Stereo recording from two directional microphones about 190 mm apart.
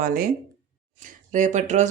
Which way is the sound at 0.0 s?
50° right (ahead or behind).